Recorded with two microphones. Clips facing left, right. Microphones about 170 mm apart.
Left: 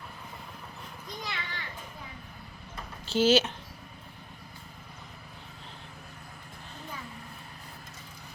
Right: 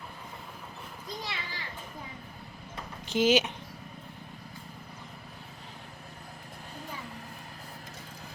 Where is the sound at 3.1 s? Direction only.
15° right (ahead or behind).